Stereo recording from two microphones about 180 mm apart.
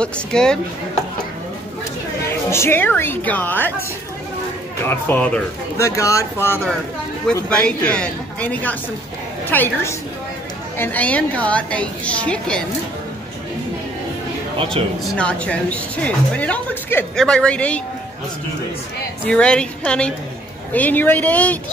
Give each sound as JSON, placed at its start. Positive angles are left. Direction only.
{"t": 0.0, "sound": "a woman's voice", "side_deg": 5}
{"t": 2.2, "sound": "a woman's voice", "side_deg": 15}
{"t": 4.8, "sound": "a woman's voice", "side_deg": 10}
{"t": 15.1, "sound": "a woman's voice", "side_deg": 5}
{"t": 19.2, "sound": "a woman's voice", "side_deg": 5}